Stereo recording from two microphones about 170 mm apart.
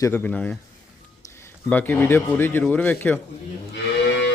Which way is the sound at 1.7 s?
10° left (ahead or behind).